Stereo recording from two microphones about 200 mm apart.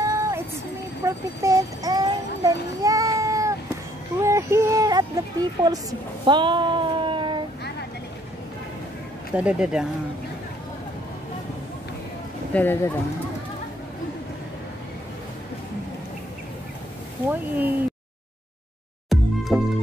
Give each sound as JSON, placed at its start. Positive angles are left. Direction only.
{"t": 0.0, "sound": "a sound", "side_deg": -15}
{"t": 4.2, "sound": "speech", "side_deg": -15}
{"t": 9.3, "sound": "speech", "side_deg": -5}
{"t": 12.5, "sound": "speech", "side_deg": 10}
{"t": 17.3, "sound": "speech", "side_deg": -10}
{"t": 19.0, "sound": "music", "side_deg": 0}